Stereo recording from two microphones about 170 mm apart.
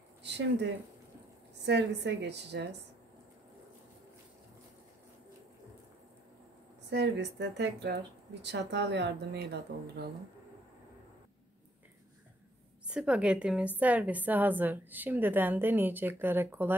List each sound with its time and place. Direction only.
0.2 s a sound: 90° right
1.7 s a woman's voice: 90° right
6.9 s speech: 90° right
12.8 s a woman's voice: 5° right (ahead or behind)